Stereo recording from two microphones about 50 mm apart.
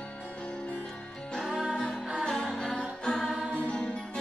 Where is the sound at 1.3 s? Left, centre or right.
Centre.